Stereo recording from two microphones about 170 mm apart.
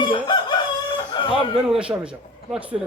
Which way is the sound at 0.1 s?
25° left (ahead or behind).